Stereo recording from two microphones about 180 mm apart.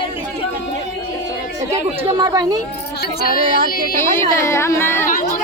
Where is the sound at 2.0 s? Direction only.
25° right (ahead or behind).